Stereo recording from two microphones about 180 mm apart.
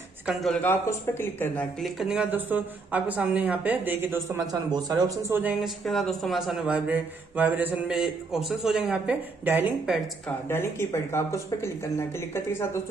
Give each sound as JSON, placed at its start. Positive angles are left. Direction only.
{"t": 0.3, "sound": "speech", "side_deg": 0}
{"t": 1.8, "sound": "speech", "side_deg": 0}
{"t": 5.6, "sound": "speech", "side_deg": 0}
{"t": 10.2, "sound": "speech", "side_deg": 15}